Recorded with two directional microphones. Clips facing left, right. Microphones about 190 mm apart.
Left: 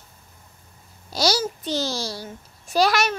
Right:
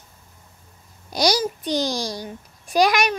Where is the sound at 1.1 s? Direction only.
15° right (ahead or behind).